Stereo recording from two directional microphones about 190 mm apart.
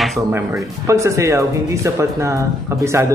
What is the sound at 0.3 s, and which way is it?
Speech, 15° right (ahead or behind).